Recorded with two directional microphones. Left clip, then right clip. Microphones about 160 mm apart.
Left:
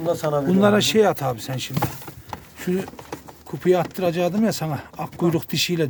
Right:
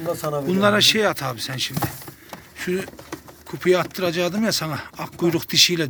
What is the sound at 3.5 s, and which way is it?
Speech, 15° left (ahead or behind).